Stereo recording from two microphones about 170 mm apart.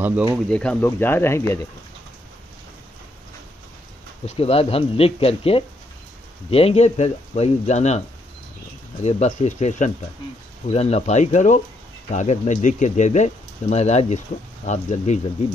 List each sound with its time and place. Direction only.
0.0 s speech: 10° right (ahead or behind)
0.5 s speech: 5° left (ahead or behind)
4.3 s speech: 35° left (ahead or behind)
9.0 s speech: 40° left (ahead or behind)